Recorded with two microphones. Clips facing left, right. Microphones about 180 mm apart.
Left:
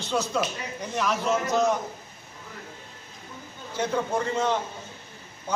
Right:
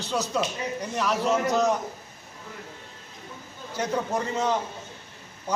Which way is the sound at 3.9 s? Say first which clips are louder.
Left 1 dB; 15° right (ahead or behind).